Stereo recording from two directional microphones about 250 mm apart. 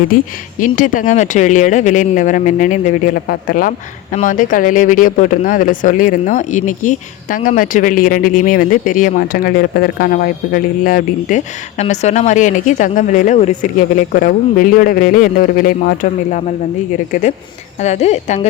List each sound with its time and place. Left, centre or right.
0.6 s speech: left